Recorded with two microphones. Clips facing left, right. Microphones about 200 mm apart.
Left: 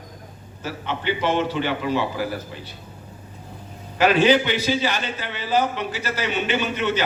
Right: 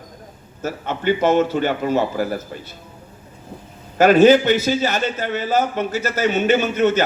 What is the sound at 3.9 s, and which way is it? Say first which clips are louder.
A man's voice: right 6 dB; 45° right (ahead or behind).